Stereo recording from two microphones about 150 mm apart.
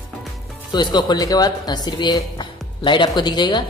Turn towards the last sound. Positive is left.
turn(degrees=30)  # may be behind; listen again after turning